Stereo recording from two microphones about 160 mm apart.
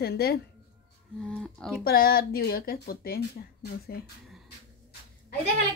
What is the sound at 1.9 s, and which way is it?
Speech, 70° left (ahead or behind).